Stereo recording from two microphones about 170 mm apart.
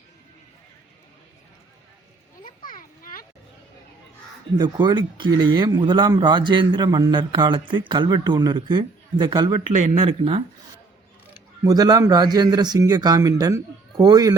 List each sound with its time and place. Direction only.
2.4 s children playing: 55° left (ahead or behind)
4.5 s speech: 25° right (ahead or behind)
11.6 s speech: 20° right (ahead or behind)